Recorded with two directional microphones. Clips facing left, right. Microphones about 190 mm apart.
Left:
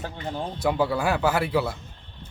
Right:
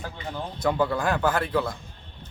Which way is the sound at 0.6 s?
5° left (ahead or behind).